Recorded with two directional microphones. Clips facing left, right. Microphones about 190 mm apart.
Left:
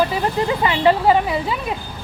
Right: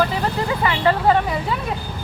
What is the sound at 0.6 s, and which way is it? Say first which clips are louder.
Speech: left 2 dB; 20° left (ahead or behind).